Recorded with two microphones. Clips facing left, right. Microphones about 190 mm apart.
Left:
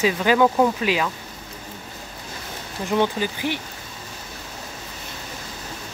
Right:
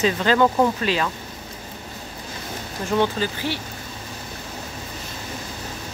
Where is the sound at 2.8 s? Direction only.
15° left (ahead or behind).